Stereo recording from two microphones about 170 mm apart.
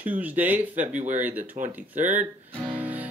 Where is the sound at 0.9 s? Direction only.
45° right (ahead or behind).